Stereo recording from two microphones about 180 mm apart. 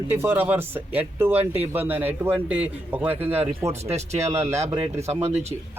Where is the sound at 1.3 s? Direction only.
35° right (ahead or behind).